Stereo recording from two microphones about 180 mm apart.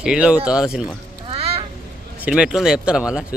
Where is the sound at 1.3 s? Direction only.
35° right (ahead or behind).